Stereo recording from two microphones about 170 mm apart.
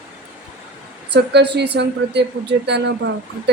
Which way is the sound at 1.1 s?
80° right.